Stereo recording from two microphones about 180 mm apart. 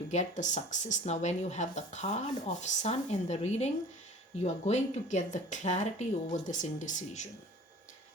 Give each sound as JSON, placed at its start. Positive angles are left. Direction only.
{"t": 0.1, "sound": "speech", "side_deg": 40}